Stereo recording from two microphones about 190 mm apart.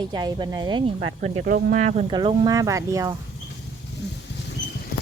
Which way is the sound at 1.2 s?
40° right (ahead or behind).